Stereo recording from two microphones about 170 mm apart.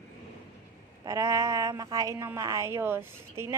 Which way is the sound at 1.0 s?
20° right (ahead or behind).